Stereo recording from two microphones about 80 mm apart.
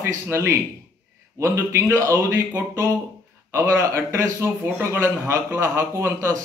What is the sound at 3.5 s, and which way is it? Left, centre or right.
A man's voice, right.